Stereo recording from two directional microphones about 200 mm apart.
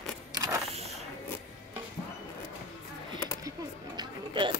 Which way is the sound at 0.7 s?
30° right (ahead or behind).